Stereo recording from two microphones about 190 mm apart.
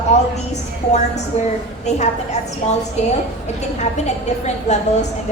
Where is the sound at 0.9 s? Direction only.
35° left (ahead or behind).